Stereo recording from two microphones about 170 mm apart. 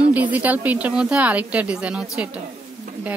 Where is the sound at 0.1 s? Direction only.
10° right (ahead or behind).